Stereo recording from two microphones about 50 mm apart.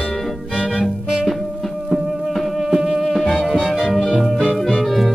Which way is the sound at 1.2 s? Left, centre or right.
Centre.